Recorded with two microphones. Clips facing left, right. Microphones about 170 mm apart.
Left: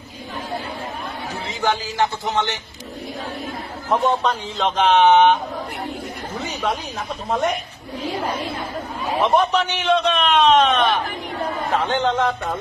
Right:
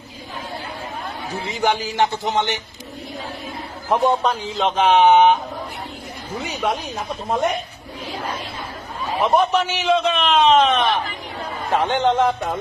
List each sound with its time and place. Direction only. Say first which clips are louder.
1.5 s a man's voice: right 2 dB; 15° right (ahead or behind)
3.9 s a man's voice: right 1 dB; 10° right (ahead or behind)
6.4 s a man's voice: right 1 dB; 10° right (ahead or behind)
9.2 s a man's voice: right 1 dB; 5° right (ahead or behind)